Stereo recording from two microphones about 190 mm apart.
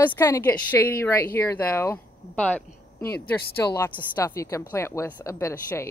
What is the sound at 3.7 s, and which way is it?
Speech, 10° left (ahead or behind).